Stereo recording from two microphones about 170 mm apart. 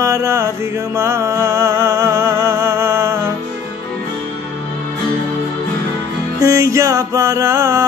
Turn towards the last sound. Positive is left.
turn(degrees=-15)  # may be behind; listen again after turning